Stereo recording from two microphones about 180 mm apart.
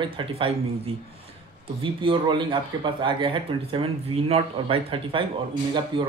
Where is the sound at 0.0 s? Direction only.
30° right (ahead or behind).